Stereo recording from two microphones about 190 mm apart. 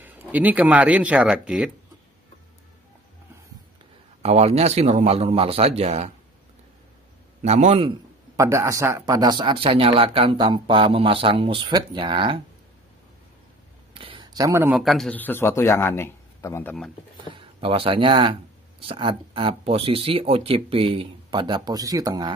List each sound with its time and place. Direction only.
0.0 s speech: 10° right (ahead or behind)
4.2 s a man's voice: 35° right (ahead or behind)
7.4 s a man's voice: 35° right (ahead or behind)
8.4 s speech: 15° right (ahead or behind)
13.9 s a sound: 25° right (ahead or behind)
14.8 s a man's voice: centre (ahead or behind)
17.3 s speech: 30° right (ahead or behind)